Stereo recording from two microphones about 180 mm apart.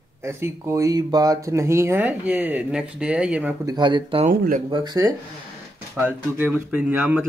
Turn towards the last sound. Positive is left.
turn(degrees=-5)  # may be behind; listen again after turning